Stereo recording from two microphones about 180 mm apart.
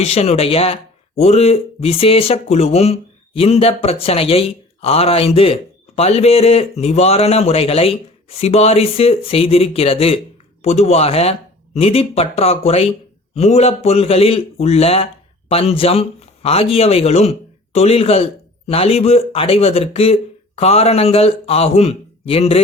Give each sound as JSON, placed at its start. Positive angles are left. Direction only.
{"t": 0.0, "sound": "speech", "side_deg": 35}